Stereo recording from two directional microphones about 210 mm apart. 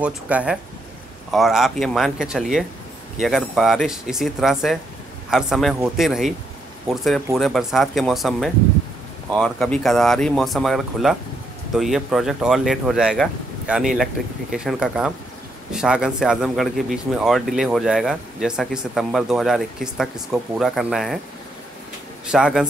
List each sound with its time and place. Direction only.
0.0 s speech: 5° right (ahead or behind)
22.2 s speech: 5° right (ahead or behind)